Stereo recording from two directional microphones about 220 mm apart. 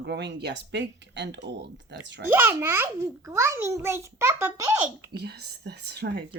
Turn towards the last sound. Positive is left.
turn(degrees=-50)  # may be behind; listen again after turning